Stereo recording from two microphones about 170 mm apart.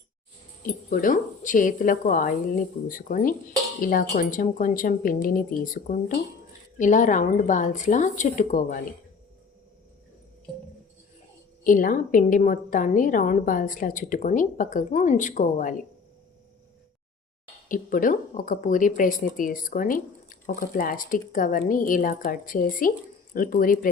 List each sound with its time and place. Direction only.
0.6 s speech: 55° left (ahead or behind)
11.6 s speech: 55° left (ahead or behind)
17.7 s speech: 50° left (ahead or behind)